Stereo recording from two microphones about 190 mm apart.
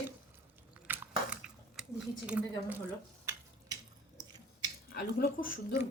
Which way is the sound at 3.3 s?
20° right (ahead or behind).